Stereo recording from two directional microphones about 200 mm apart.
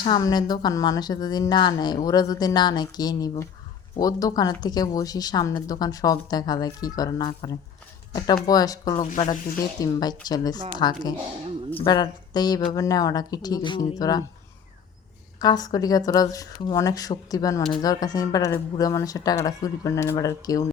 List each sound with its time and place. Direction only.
0.0 s speech: 20° left (ahead or behind)
8.4 s speech: 20° left (ahead or behind)
9.0 s speech: 35° left (ahead or behind)
9.8 s speech: 20° left (ahead or behind)
15.4 s speech: 20° left (ahead or behind)